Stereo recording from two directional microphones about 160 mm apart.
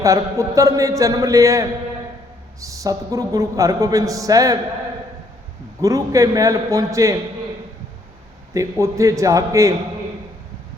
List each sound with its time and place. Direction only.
0.0 s a man's voice: 20° right (ahead or behind)
5.8 s a man's voice: 20° right (ahead or behind)
8.5 s a man's voice: 20° right (ahead or behind)